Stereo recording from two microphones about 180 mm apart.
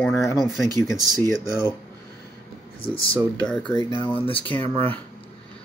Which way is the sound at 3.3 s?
5° left (ahead or behind).